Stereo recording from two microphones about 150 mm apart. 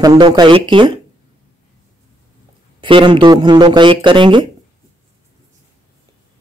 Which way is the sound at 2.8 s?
35° right (ahead or behind).